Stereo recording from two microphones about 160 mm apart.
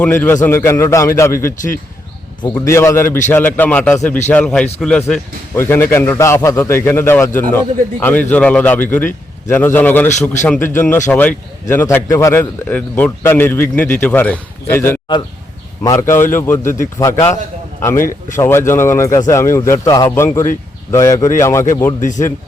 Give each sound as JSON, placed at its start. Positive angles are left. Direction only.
{"t": 0.0, "sound": "a man's voice", "side_deg": 10}
{"t": 2.6, "sound": "a man's voice", "side_deg": 15}
{"t": 18.3, "sound": "a man's voice", "side_deg": 15}